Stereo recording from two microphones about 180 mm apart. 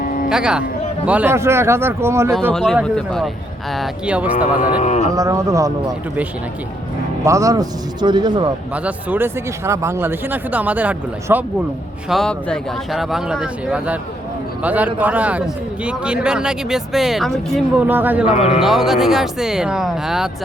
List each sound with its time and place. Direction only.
0.0 s music: 50° left (ahead or behind)
0.3 s a man's voice: 5° right (ahead or behind)
2.5 s a man's voice: 5° left (ahead or behind)
4.6 s speech: 40° left (ahead or behind)
5.1 s speech: 20° right (ahead or behind)
7.3 s a man's voice: 20° right (ahead or behind)
8.7 s speech: 10° right (ahead or behind)
12.0 s a man's voice: centre (ahead or behind)
17.8 s speech: 10° right (ahead or behind)
18.3 s speech: 35° left (ahead or behind)
18.6 s a man's voice: centre (ahead or behind)